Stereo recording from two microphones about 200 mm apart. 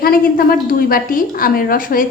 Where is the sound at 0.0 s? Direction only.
45° left (ahead or behind).